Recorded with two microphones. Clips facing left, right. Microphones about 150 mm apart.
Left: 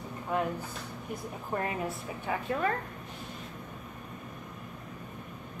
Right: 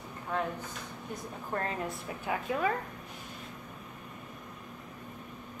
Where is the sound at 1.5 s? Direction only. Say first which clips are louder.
Left 2 dB; 10° left (ahead or behind).